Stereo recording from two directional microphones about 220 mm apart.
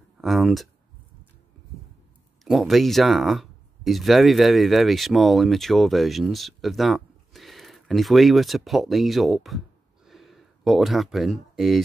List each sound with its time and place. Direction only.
0.2 s speech: centre (ahead or behind)
2.4 s speech: centre (ahead or behind)
10.0 s a sound: centre (ahead or behind)